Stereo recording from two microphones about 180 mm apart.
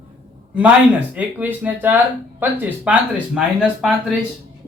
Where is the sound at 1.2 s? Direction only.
10° right (ahead or behind).